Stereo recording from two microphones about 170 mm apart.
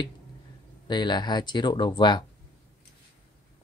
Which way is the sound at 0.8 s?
25° left (ahead or behind).